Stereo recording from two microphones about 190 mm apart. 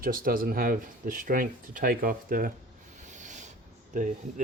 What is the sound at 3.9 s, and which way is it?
Speech, 40° right (ahead or behind).